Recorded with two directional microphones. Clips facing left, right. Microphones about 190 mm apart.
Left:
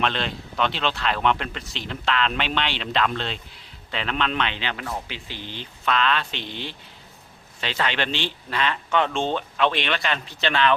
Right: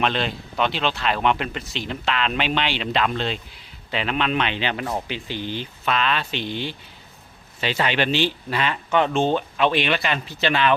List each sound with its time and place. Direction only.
0.0 s speech: 5° right (ahead or behind)